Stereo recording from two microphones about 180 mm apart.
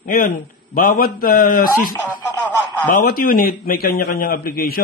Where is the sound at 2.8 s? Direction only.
50° left (ahead or behind).